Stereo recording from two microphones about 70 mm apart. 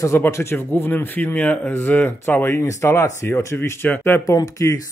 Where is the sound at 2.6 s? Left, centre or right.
Left.